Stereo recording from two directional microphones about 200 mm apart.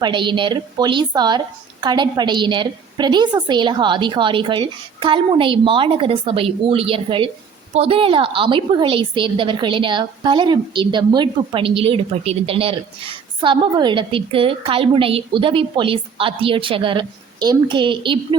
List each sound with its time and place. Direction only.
0.0 s a woman's voice: 25° right (ahead or behind)